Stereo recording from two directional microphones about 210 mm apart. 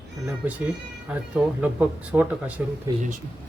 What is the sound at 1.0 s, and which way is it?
Speech, 5° right (ahead or behind).